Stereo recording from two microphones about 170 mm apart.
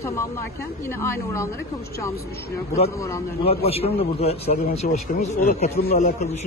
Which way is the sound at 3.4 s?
35° left (ahead or behind).